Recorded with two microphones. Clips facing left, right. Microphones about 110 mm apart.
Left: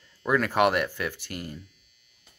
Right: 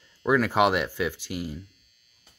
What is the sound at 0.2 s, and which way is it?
Speech, 15° right (ahead or behind).